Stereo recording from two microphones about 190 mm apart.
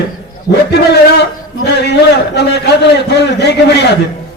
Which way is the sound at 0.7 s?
60° left (ahead or behind).